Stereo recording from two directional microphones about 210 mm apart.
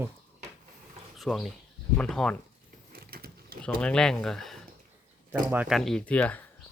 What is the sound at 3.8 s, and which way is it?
Speech, 5° left (ahead or behind).